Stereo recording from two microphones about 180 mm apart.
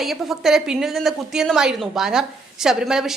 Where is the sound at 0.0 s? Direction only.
Centre (ahead or behind).